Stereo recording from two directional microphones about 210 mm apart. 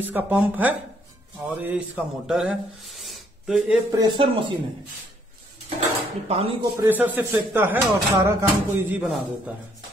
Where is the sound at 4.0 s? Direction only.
25° right (ahead or behind).